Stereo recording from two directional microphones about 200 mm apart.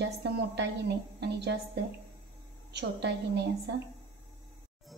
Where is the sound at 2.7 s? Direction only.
60° right (ahead or behind).